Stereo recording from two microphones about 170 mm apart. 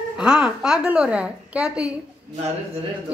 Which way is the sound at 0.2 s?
5° right (ahead or behind).